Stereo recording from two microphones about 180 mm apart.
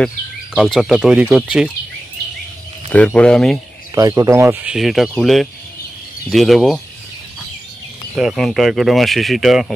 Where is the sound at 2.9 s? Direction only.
10° left (ahead or behind).